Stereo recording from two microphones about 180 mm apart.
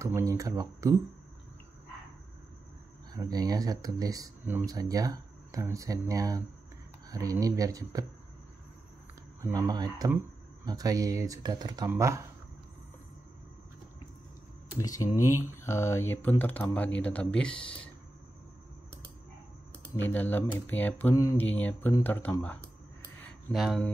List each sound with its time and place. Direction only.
0.0 s speech: 15° right (ahead or behind)
3.1 s speech: 20° right (ahead or behind)
9.4 s speech: 20° right (ahead or behind)
14.8 s speech: 20° left (ahead or behind)
19.7 s speech: 10° left (ahead or behind)
23.5 s speech: centre (ahead or behind)